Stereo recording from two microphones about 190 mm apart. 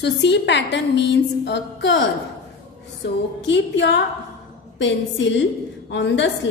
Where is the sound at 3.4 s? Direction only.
70° left (ahead or behind).